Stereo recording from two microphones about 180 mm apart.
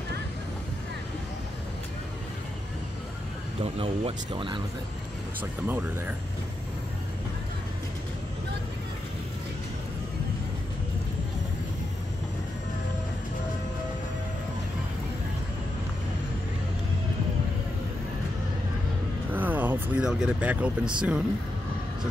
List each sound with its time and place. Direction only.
3.6 s speech: 30° right (ahead or behind)
5.4 s speech: 10° right (ahead or behind)
19.3 s a sound: 10° right (ahead or behind)